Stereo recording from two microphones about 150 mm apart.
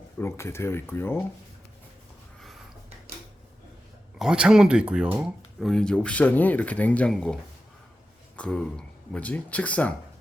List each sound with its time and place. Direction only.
0.2 s speech: 15° left (ahead or behind)
4.2 s speech: 5° right (ahead or behind)
8.4 s speech: 5° left (ahead or behind)